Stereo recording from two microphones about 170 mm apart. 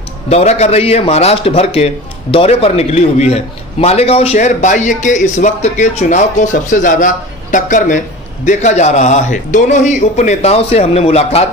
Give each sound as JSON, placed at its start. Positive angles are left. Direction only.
{"t": 0.3, "sound": "a man's voice", "side_deg": 40}